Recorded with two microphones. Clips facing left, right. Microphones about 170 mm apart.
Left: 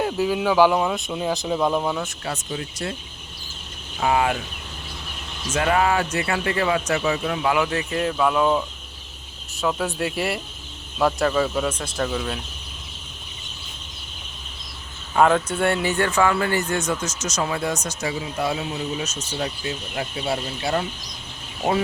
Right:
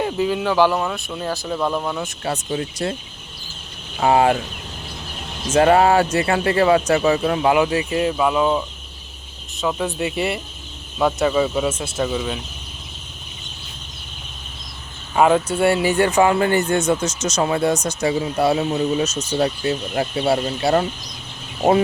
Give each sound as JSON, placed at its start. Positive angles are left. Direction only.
{"t": 0.0, "sound": "speech", "side_deg": 5}
{"t": 2.2, "sound": "speech", "side_deg": -35}
{"t": 4.0, "sound": "speech", "side_deg": -35}
{"t": 5.5, "sound": "speech", "side_deg": -35}
{"t": 7.7, "sound": "speech", "side_deg": -10}
{"t": 15.1, "sound": "speech", "side_deg": -10}